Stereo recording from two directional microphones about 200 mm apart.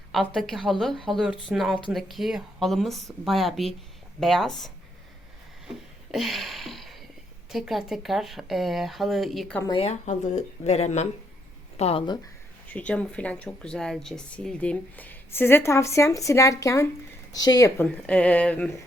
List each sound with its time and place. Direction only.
0.3 s speech: centre (ahead or behind)
5.6 s a sound: centre (ahead or behind)
7.5 s speech: centre (ahead or behind)
9.6 s a woman's voice: 30° left (ahead or behind)
12.6 s a woman's voice: 5° left (ahead or behind)
17.8 s speech: 5° left (ahead or behind)